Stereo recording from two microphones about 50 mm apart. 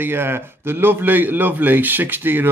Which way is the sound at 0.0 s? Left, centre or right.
Right.